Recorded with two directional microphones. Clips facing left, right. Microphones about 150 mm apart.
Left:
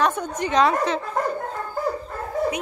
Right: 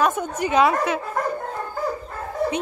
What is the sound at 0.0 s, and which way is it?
A woman's voice, 10° right (ahead or behind).